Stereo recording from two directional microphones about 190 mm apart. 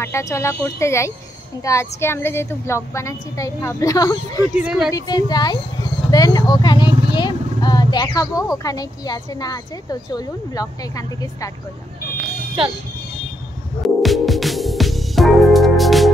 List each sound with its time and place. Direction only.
0.0 s a woman's voice: 15° left (ahead or behind)
4.6 s a woman's voice: 5° right (ahead or behind)
4.9 s speech: 20° left (ahead or behind)
13.8 s music: centre (ahead or behind)